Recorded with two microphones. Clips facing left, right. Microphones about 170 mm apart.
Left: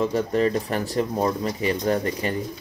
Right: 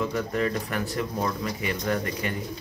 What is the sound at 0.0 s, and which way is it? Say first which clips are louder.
Speech: left 5 dB; 30° left (ahead or behind).